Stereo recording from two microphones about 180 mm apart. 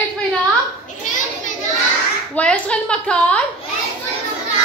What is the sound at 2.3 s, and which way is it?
A woman's voice, 5° left (ahead or behind).